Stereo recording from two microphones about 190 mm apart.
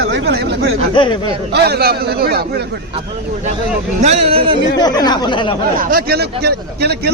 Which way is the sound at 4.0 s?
35° right (ahead or behind).